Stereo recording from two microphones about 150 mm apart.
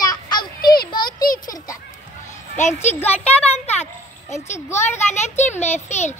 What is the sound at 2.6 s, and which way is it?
Speech, 50° left (ahead or behind).